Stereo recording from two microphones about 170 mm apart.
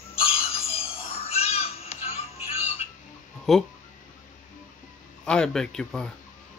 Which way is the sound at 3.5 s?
Centre (ahead or behind).